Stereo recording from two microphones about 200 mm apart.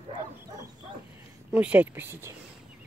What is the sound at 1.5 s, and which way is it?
Speech, 5° right (ahead or behind).